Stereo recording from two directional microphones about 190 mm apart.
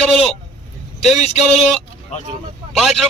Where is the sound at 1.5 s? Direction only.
5° left (ahead or behind).